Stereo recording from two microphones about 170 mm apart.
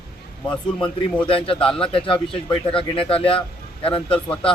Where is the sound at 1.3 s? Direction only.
30° left (ahead or behind).